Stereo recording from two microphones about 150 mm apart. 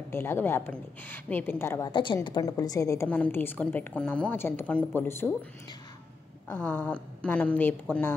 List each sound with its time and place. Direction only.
0.1 s a woman's voice: 15° left (ahead or behind)
1.9 s a woman's voice: 30° left (ahead or behind); by 5.3 s 15° left (ahead or behind)
6.5 s a woman's voice: 10° left (ahead or behind)